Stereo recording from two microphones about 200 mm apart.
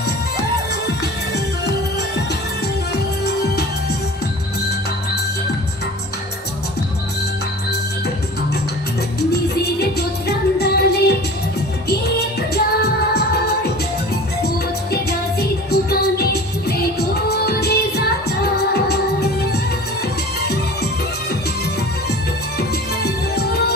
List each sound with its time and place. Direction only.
9.3 s music: 55° left (ahead or behind)
12.5 s music: 55° left (ahead or behind)
15.4 s music: 55° left (ahead or behind)
22.5 s music: 55° left (ahead or behind)